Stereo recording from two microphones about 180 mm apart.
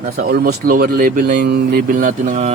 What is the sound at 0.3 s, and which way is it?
Mantra, 55° right (ahead or behind).